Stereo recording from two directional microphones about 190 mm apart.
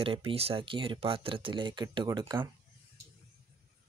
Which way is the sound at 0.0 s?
30° right (ahead or behind).